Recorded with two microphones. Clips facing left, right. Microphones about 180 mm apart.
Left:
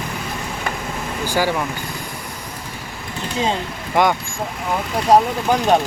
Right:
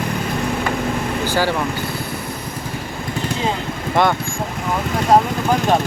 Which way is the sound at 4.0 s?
10° left (ahead or behind).